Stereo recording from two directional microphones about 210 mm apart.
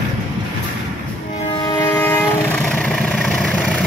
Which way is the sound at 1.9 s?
10° left (ahead or behind).